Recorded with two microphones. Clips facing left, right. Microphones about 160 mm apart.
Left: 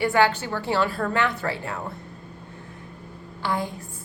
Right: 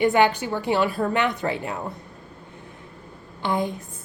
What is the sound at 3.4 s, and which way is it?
Speech, 20° right (ahead or behind).